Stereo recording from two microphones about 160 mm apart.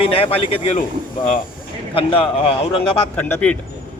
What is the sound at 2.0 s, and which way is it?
Speech, 35° left (ahead or behind).